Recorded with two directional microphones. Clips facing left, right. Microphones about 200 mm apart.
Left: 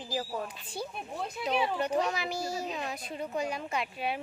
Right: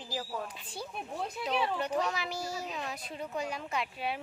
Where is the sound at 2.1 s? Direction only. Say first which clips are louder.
Left 3 dB; centre (ahead or behind).